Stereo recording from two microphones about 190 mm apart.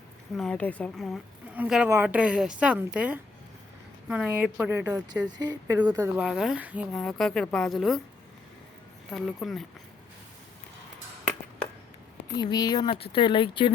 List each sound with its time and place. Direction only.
0.3 s a woman's voice: 5° left (ahead or behind); by 6.1 s 20° right (ahead or behind)
6.1 s speech: 5° right (ahead or behind)
9.1 s speech: centre (ahead or behind)
12.4 s speech: 20° left (ahead or behind)